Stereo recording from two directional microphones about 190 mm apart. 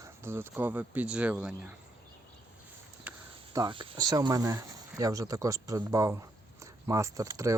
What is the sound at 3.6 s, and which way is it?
Speech, 20° right (ahead or behind).